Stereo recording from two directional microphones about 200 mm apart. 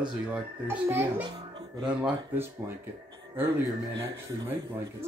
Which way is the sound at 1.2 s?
20° right (ahead or behind).